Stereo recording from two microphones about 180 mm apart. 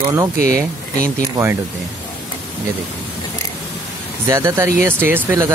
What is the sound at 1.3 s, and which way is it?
Speech, 15° right (ahead or behind).